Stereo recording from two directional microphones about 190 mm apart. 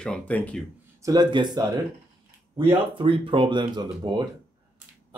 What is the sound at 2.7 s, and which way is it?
Speech, 25° right (ahead or behind).